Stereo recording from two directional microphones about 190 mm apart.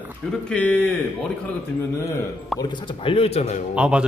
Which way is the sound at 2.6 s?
25° left (ahead or behind).